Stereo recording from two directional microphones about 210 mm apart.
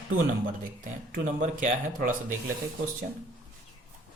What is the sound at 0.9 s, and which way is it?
Speech, 35° right (ahead or behind).